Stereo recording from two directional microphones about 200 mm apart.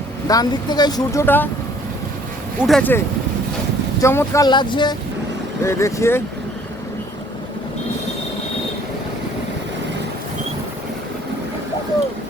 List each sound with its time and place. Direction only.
0.3 s speech: 20° left (ahead or behind)
2.6 s speech: centre (ahead or behind)
4.0 s speech: 15° left (ahead or behind)